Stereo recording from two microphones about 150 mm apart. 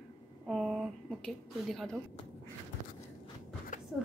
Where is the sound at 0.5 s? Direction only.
Centre (ahead or behind).